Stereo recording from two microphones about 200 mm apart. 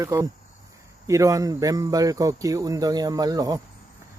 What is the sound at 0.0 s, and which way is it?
Speech, 15° right (ahead or behind).